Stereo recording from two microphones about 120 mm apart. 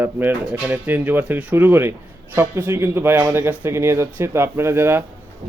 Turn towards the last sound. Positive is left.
turn(degrees=-20)  # may be behind; listen again after turning